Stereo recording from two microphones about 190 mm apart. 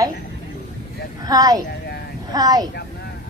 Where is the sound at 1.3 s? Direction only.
20° right (ahead or behind).